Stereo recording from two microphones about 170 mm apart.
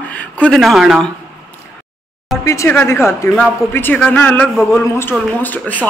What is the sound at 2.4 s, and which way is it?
A man's voice, 15° left (ahead or behind).